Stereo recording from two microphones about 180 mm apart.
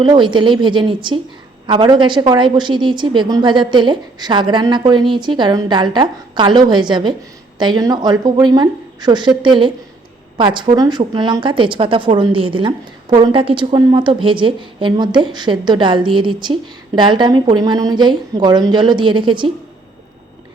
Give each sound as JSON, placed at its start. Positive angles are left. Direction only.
{"t": 0.0, "sound": "speech", "side_deg": -25}